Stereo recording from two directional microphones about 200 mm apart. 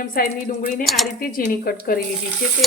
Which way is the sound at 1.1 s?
45° left (ahead or behind).